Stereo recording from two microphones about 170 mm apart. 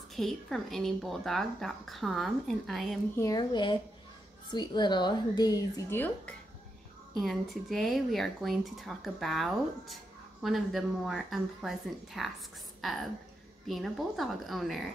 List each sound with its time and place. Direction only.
0.1 s a woman's voice: centre (ahead or behind)
3.2 s a woman's voice: 25° left (ahead or behind)
5.9 s a woman's voice: 10° left (ahead or behind)